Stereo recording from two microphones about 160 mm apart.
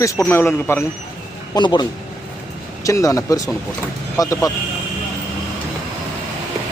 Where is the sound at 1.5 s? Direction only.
25° left (ahead or behind).